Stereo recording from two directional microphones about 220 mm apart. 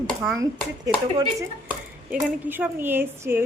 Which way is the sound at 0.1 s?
Centre (ahead or behind).